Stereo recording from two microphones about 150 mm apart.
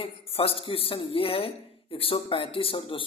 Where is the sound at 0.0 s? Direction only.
40° left (ahead or behind).